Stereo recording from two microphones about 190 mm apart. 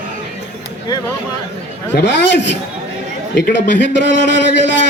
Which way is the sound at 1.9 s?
65° left (ahead or behind).